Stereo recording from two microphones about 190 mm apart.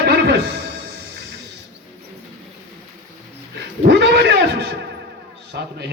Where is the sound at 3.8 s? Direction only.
60° right (ahead or behind).